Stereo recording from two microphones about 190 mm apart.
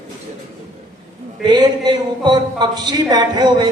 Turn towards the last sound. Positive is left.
turn(degrees=-20)  # may be behind; listen again after turning